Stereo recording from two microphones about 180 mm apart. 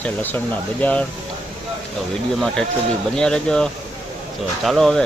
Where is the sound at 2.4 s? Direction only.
Centre (ahead or behind).